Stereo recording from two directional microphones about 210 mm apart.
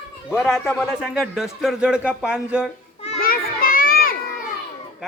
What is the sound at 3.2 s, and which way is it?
Children playing, 45° left (ahead or behind).